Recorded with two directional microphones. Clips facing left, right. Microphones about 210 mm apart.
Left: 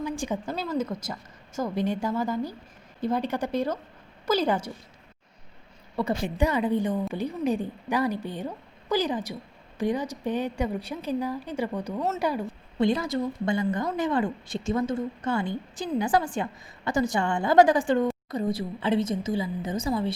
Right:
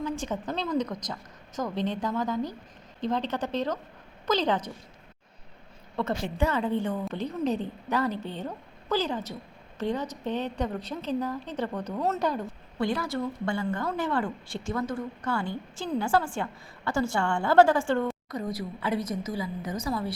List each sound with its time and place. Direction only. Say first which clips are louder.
0.0 s a woman's voice: left 1 dB; 10° left (ahead or behind)
6.1 s a woman's voice: left 2 dB; 15° left (ahead or behind)
18.3 s a woman's voice: left 4 dB; 30° left (ahead or behind)